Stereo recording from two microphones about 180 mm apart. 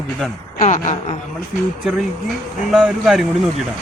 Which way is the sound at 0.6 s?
45° left (ahead or behind).